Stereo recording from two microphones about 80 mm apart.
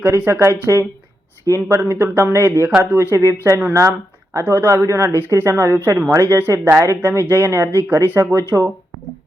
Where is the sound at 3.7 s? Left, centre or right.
Right.